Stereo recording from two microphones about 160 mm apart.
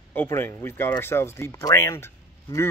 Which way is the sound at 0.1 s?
15° left (ahead or behind).